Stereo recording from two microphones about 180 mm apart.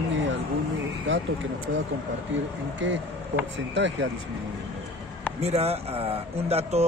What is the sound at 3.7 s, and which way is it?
Speech, 80° right.